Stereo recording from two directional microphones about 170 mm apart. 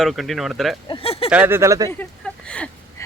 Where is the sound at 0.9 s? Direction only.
35° left (ahead or behind).